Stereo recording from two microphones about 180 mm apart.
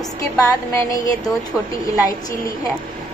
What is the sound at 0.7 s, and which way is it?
Speech, 20° left (ahead or behind).